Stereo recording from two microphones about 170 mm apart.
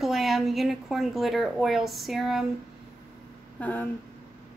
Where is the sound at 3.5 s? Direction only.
10° left (ahead or behind).